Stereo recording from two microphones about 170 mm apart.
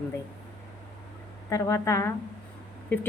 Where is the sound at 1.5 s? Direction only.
20° left (ahead or behind).